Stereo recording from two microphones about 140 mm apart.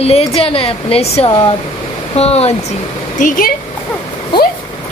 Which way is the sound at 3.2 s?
75° left (ahead or behind).